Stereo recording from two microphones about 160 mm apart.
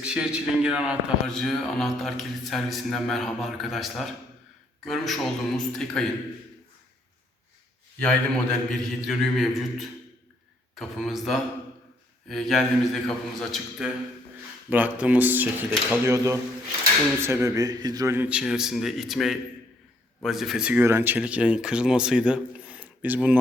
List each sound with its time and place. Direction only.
0.0 s a man's voice: 5° right (ahead or behind)
7.9 s a man's voice: 5° left (ahead or behind); by 23.4 s 10° right (ahead or behind)